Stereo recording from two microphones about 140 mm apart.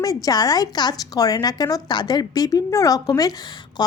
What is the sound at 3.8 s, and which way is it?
Quack, 30° left (ahead or behind).